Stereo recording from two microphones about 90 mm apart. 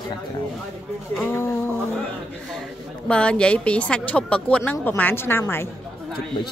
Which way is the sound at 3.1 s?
10° left (ahead or behind).